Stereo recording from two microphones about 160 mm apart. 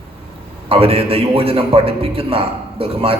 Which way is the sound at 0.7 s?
35° right (ahead or behind).